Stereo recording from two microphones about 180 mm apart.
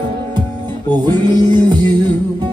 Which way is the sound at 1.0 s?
25° right (ahead or behind).